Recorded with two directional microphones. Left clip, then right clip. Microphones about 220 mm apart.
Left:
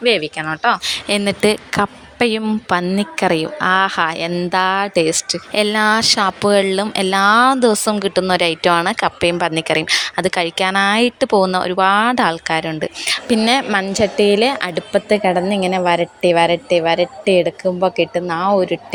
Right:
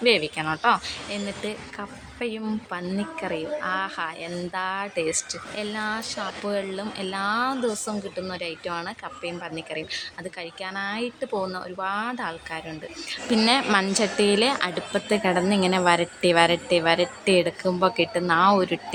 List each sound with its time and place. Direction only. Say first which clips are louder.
0.0 s speech: left 5 dB; 20° left (ahead or behind)
0.8 s speech: left 13 dB; 45° left (ahead or behind)
13.4 s a woman's voice: left 2 dB; 25° left (ahead or behind)